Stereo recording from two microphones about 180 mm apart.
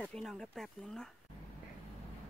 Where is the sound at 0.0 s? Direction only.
5° left (ahead or behind).